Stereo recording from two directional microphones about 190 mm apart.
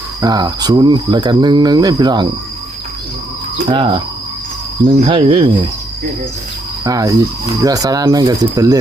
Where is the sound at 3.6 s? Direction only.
25° right (ahead or behind).